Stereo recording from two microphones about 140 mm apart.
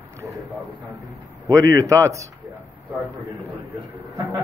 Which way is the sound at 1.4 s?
25° right (ahead or behind).